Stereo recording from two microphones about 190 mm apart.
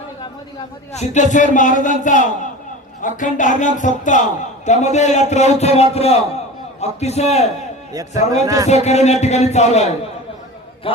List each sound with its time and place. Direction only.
0.9 s a man's voice: 40° left (ahead or behind)